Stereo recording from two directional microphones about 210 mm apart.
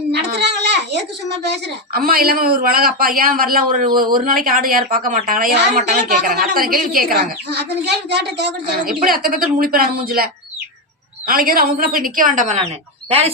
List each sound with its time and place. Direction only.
0.1 s a sound: 50° right (ahead or behind)
1.9 s a man's voice: 45° right (ahead or behind)
11.3 s a woman's voice: 45° right (ahead or behind); by 13.3 s 30° right (ahead or behind)